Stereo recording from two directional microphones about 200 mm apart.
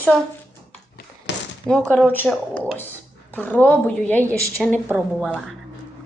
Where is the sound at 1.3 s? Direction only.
60° left (ahead or behind).